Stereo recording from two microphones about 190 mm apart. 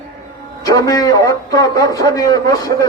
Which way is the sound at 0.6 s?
20° left (ahead or behind).